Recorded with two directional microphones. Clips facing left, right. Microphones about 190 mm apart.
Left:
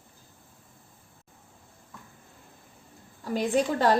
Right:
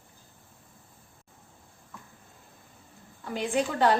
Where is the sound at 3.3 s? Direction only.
40° left (ahead or behind).